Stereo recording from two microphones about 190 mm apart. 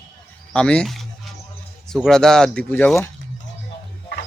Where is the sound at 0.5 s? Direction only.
5° left (ahead or behind).